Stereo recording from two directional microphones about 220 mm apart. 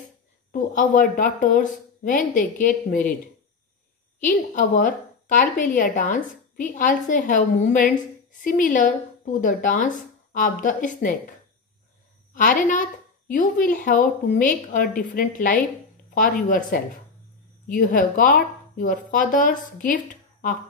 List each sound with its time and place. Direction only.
0.5 s a woman's voice: 40° left (ahead or behind)
4.3 s a woman's voice: 35° left (ahead or behind)
12.4 s a woman's voice: 40° left (ahead or behind)